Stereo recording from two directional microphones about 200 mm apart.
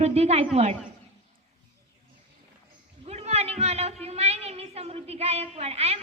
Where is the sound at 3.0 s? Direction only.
35° right (ahead or behind).